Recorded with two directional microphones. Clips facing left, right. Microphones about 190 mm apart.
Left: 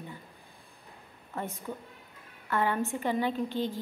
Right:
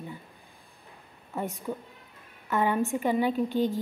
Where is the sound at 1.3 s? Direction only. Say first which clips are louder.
Right 4 dB; 15° right (ahead or behind).